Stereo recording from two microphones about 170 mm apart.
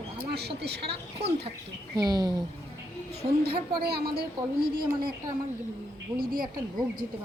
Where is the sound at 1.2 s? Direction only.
35° right (ahead or behind).